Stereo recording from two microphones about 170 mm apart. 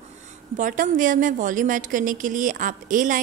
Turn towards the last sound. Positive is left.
turn(degrees=-50)  # may be behind; listen again after turning